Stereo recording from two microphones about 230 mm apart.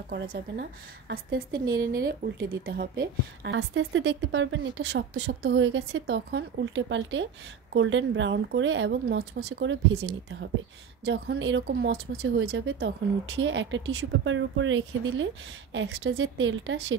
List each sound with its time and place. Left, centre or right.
0.1 s a woman's voice: right